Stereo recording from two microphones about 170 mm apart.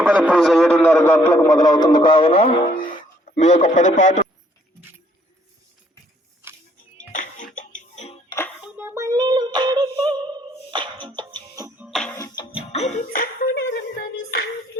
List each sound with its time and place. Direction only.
0.0 s a man's voice: 10° right (ahead or behind); by 2.5 s 35° left (ahead or behind)
2.7 s a man's voice: 50° left (ahead or behind)
7.1 s music: 50° left (ahead or behind)
8.6 s female singing: 10° right (ahead or behind)
11.9 s music: centre (ahead or behind)
12.1 s music: 20° left (ahead or behind); by 13.1 s 40° left (ahead or behind)
13.1 s music: 65° left (ahead or behind)